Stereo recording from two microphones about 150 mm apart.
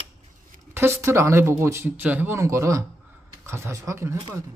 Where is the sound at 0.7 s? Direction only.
15° right (ahead or behind).